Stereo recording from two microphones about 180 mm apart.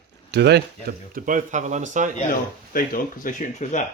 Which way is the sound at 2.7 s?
50° left (ahead or behind).